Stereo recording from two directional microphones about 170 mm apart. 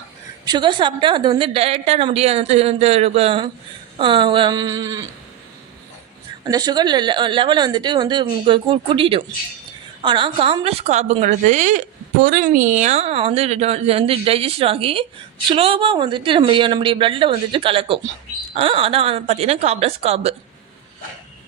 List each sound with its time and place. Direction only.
0.4 s a woman's voice: 25° right (ahead or behind)
6.4 s a woman's voice: 25° right (ahead or behind); by 11.8 s 45° right (ahead or behind)
12.2 s a woman's voice: 55° right (ahead or behind); by 20.3 s 35° right (ahead or behind)